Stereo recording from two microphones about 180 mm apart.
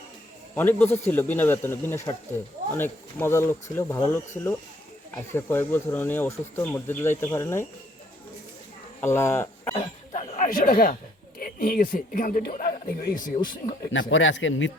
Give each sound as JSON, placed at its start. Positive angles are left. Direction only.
{"t": 0.5, "sound": "speech", "side_deg": 10}
{"t": 9.0, "sound": "speech", "side_deg": 15}
{"t": 9.7, "sound": "speech", "side_deg": 40}
{"t": 13.9, "sound": "a man's voice", "side_deg": 90}